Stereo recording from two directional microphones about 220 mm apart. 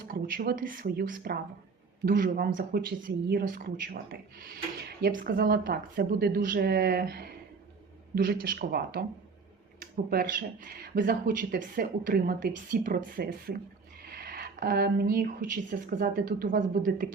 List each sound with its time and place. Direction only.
0.0 s speech: 40° right (ahead or behind)